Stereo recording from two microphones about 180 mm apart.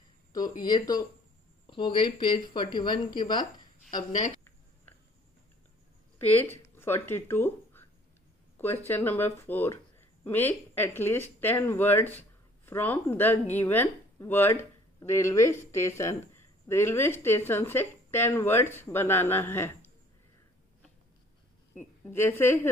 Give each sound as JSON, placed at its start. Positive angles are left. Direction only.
{"t": 0.3, "sound": "speech", "side_deg": 20}
{"t": 6.1, "sound": "speech", "side_deg": 15}
{"t": 21.7, "sound": "a woman's voice", "side_deg": 10}